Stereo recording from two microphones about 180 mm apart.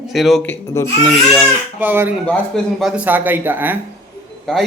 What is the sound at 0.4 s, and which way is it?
Speech, 15° left (ahead or behind).